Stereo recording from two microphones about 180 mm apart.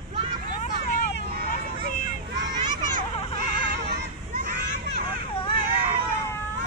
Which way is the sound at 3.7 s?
65° right (ahead or behind).